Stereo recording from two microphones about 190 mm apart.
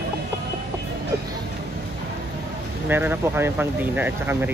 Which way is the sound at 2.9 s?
10° right (ahead or behind).